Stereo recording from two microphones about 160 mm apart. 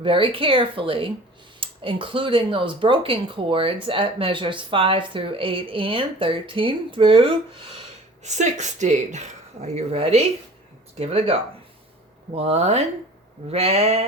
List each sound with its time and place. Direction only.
0.0 s speech: 35° right (ahead or behind)
8.2 s speech: 45° right (ahead or behind)